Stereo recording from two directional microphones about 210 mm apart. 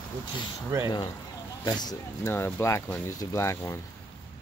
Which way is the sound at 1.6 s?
20° left (ahead or behind).